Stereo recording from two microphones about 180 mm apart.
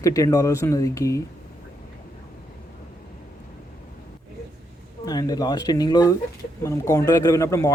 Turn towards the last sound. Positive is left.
turn(degrees=15)  # may be behind; listen again after turning